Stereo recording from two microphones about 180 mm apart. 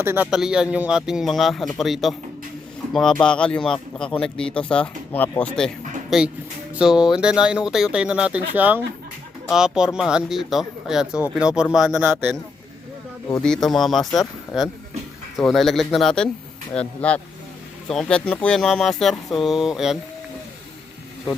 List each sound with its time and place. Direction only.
0.0 s speech: 10° right (ahead or behind)
13.4 s speech: 5° left (ahead or behind)